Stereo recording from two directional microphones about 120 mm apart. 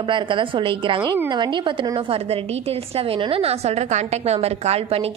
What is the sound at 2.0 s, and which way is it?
A woman's voice, 55° right (ahead or behind).